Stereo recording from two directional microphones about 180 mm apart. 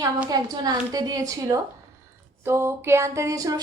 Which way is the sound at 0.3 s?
20° right (ahead or behind).